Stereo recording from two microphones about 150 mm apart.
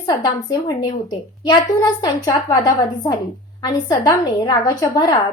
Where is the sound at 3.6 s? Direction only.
25° left (ahead or behind).